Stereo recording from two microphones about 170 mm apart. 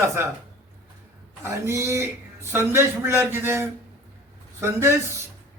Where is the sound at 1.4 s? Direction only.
15° right (ahead or behind).